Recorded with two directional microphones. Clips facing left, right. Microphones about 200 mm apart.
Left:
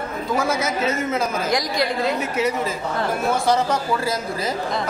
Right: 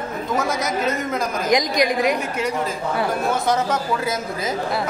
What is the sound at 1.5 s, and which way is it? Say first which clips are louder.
Speech: right 7 dB; 15° right (ahead or behind).